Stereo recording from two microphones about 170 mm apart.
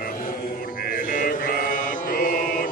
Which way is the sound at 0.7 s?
55° left (ahead or behind).